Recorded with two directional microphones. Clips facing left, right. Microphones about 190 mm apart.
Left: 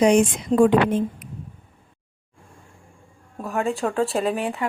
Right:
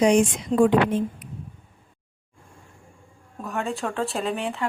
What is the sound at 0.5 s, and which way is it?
Speech, 40° left (ahead or behind).